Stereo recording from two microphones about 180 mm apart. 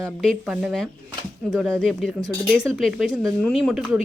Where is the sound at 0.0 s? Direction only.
Centre (ahead or behind).